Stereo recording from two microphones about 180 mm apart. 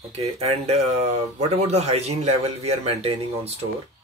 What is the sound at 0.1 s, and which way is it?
A man's voice, 35° right (ahead or behind).